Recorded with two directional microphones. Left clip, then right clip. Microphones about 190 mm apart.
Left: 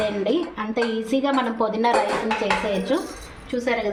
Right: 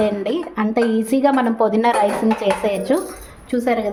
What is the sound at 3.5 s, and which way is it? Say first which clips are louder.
Speech: right 4 dB; 65° right (ahead or behind).